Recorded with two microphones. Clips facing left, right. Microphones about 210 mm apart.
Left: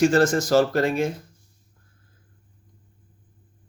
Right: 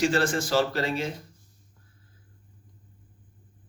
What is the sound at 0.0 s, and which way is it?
Speech, 45° left (ahead or behind).